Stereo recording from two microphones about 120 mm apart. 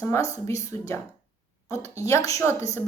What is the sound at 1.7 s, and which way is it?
Speech, 25° left (ahead or behind).